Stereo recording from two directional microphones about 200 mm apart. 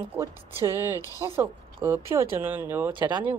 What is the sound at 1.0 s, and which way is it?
Speech, 15° left (ahead or behind).